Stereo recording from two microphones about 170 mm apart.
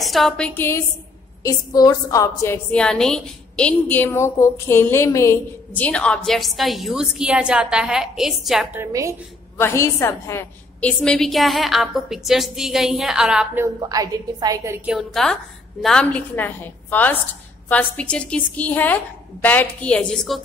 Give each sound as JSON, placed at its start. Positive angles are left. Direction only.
{"t": 0.0, "sound": "a woman's voice", "side_deg": 0}
{"t": 0.6, "sound": "a woman's voice", "side_deg": 15}
{"t": 8.7, "sound": "a woman's voice", "side_deg": -20}
{"t": 9.6, "sound": "a woman's voice", "side_deg": 15}
{"t": 13.7, "sound": "a woman's voice", "side_deg": -20}
{"t": 14.9, "sound": "a woman's voice", "side_deg": 0}